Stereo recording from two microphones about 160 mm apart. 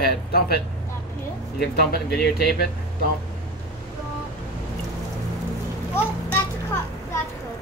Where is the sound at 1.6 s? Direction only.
85° left.